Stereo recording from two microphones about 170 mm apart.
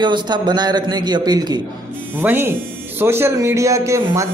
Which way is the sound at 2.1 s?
10° right (ahead or behind).